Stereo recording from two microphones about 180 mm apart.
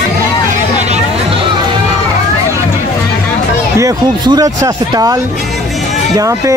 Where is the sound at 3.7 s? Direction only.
20° right (ahead or behind).